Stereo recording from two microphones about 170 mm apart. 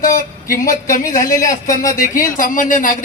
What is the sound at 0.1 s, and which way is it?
A man's voice, 50° left (ahead or behind).